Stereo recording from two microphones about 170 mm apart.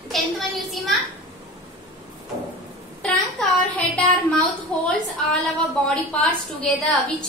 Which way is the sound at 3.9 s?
5° left (ahead or behind).